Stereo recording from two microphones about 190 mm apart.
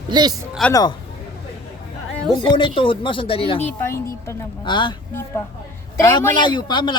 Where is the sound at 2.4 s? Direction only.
25° left (ahead or behind).